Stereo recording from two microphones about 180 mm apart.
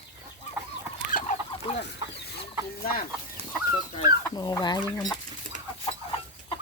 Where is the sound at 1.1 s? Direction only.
45° left (ahead or behind).